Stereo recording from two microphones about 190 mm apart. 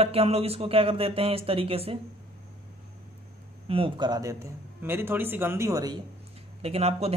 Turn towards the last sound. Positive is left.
turn(degrees=-30)  # may be behind; listen again after turning